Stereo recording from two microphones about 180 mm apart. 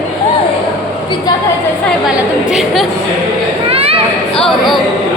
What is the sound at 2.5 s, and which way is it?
Chatter, centre (ahead or behind).